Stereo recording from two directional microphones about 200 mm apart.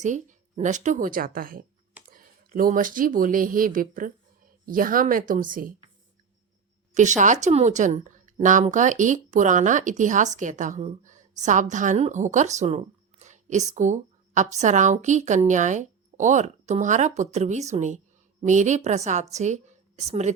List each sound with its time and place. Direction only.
0.0 s a woman's voice: 40° right (ahead or behind)
6.9 s a woman's voice: 35° right (ahead or behind)